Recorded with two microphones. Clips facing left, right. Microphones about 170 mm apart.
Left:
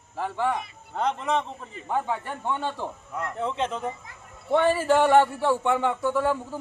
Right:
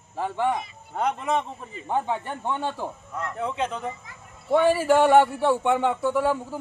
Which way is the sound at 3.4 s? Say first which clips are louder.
Even; centre (ahead or behind).